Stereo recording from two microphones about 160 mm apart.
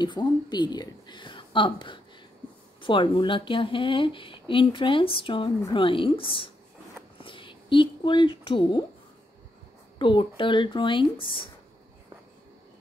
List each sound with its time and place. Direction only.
0.0 s speech: 25° left (ahead or behind)
9.9 s speech: 30° left (ahead or behind)